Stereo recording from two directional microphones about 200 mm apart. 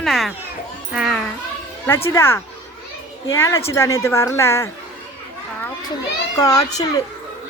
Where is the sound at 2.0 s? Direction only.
15° left (ahead or behind).